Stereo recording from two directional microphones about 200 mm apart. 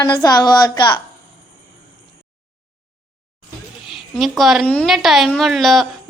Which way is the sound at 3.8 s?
Centre (ahead or behind).